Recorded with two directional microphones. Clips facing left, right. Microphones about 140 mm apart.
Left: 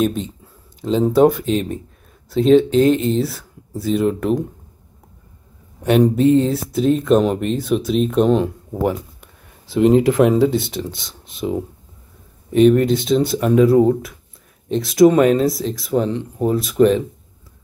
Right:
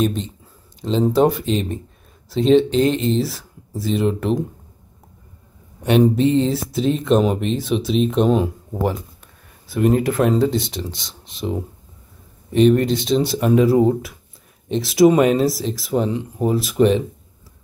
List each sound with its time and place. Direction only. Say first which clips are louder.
0.0 s speech: left 1 dB; 5° left (ahead or behind)
5.9 s speech: left 2 dB; centre (ahead or behind)
9.8 s speech: left 4 dB; 20° left (ahead or behind)
10.3 s speech: left 2 dB; 5° left (ahead or behind)
12.5 s speech: left 2 dB; 5° left (ahead or behind)